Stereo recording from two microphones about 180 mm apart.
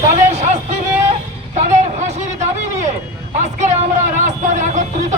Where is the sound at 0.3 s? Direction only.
40° right (ahead or behind).